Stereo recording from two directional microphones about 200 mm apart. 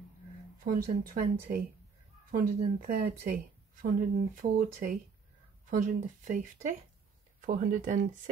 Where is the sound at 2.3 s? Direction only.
45° right (ahead or behind).